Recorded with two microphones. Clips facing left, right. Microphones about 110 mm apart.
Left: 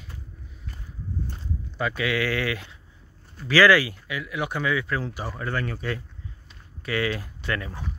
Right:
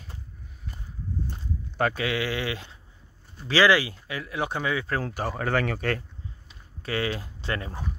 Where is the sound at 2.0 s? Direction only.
25° right (ahead or behind).